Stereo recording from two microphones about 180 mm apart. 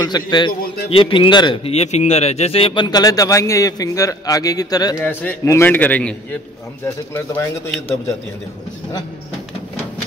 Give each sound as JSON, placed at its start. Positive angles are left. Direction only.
{"t": 0.0, "sound": "a man's voice", "side_deg": 25}
{"t": 0.5, "sound": "a man's voice", "side_deg": 55}
{"t": 0.8, "sound": "a man's voice", "side_deg": 30}
{"t": 5.0, "sound": "a man's voice", "side_deg": 10}